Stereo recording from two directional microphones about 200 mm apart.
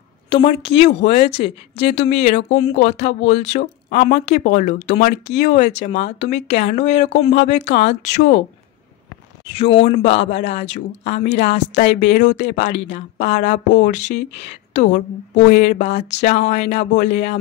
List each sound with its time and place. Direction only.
0.3 s speech: 25° left (ahead or behind)
9.6 s speech: 30° left (ahead or behind)